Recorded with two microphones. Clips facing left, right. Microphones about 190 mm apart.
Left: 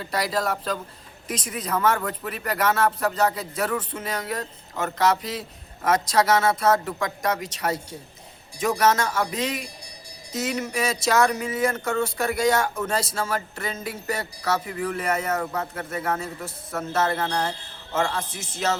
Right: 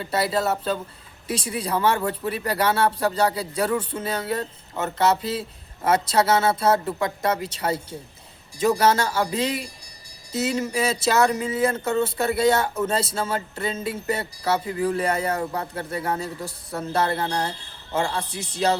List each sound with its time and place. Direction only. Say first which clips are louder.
0.1 s speech: right 2 dB; 25° right (ahead or behind)